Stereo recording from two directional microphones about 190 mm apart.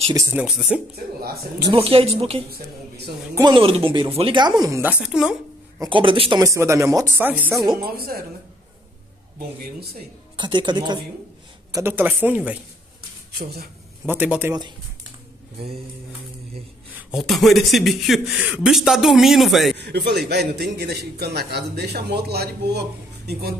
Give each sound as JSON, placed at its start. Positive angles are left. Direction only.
{"t": 0.1, "sound": "speech", "side_deg": -10}
{"t": 1.2, "sound": "speech", "side_deg": -55}
{"t": 1.7, "sound": "speech", "side_deg": -30}
{"t": 5.8, "sound": "speech", "side_deg": -25}
{"t": 6.4, "sound": "speech", "side_deg": -15}
{"t": 7.7, "sound": "speech", "side_deg": -50}
{"t": 9.6, "sound": "a man's voice", "side_deg": -55}
{"t": 10.3, "sound": "speech", "side_deg": -25}
{"t": 11.7, "sound": "speech", "side_deg": -10}
{"t": 13.4, "sound": "a man's voice", "side_deg": -55}
{"t": 14.0, "sound": "speech", "side_deg": -10}
{"t": 16.9, "sound": "speech", "side_deg": 0}
{"t": 19.8, "sound": "a man's voice", "side_deg": -60}